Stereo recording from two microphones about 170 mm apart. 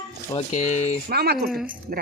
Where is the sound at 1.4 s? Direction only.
5° right (ahead or behind).